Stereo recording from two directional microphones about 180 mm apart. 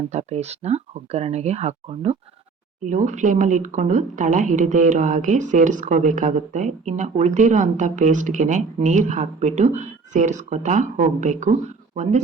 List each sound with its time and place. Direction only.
0.1 s speech: 40° right (ahead or behind)